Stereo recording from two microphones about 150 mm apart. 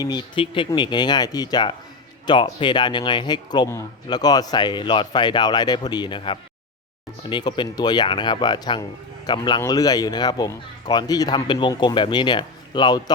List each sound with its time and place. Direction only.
0.0 s speech: 30° left (ahead or behind)